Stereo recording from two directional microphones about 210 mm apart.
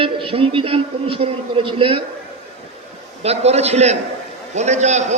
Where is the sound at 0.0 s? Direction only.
25° right (ahead or behind).